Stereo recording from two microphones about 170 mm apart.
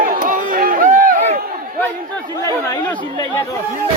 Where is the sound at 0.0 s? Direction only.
55° right (ahead or behind).